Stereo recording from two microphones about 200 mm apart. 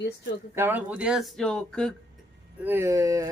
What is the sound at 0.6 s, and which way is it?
Speech, 10° right (ahead or behind).